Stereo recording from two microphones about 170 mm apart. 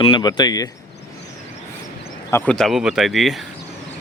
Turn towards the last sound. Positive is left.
turn(degrees=0)  # may be behind; listen again after turning